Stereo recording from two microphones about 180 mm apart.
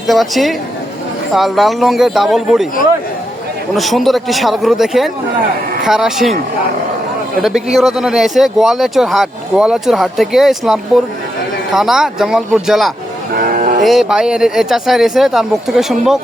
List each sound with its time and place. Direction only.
0.1 s speech: centre (ahead or behind)
3.8 s speech: centre (ahead or behind)
7.4 s speech: centre (ahead or behind)
13.5 s music: 50° right (ahead or behind)
13.8 s speech: centre (ahead or behind)